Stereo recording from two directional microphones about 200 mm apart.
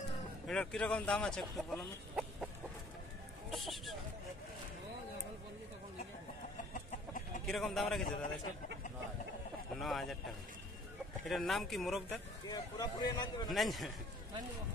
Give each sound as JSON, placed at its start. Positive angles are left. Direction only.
{"t": 0.5, "sound": "speech", "side_deg": 5}
{"t": 3.5, "sound": "speech", "side_deg": 0}
{"t": 7.4, "sound": "speech", "side_deg": 0}
{"t": 9.8, "sound": "speech", "side_deg": 0}
{"t": 11.2, "sound": "speech", "side_deg": 0}
{"t": 12.4, "sound": "speech", "side_deg": 20}
{"t": 13.5, "sound": "speech", "side_deg": 0}